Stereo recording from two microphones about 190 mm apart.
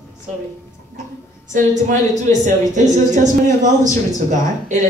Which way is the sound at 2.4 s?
40° right (ahead or behind).